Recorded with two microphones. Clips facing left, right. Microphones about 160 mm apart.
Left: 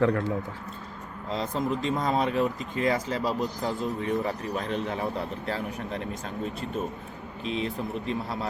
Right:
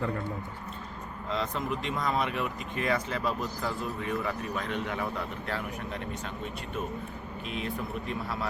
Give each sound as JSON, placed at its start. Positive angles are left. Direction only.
{"t": 0.0, "sound": "speech", "side_deg": 85}
{"t": 1.3, "sound": "speech", "side_deg": 35}
{"t": 7.4, "sound": "speech", "side_deg": 30}